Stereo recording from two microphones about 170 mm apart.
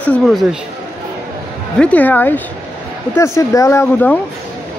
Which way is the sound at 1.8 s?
10° left (ahead or behind).